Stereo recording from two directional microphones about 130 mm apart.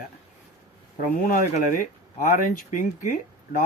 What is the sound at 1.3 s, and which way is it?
Speech, 90° left.